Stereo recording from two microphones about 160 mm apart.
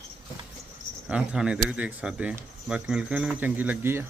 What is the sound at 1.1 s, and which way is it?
Speech, 5° right (ahead or behind).